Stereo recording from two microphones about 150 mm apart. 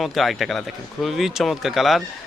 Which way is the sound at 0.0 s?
Centre (ahead or behind).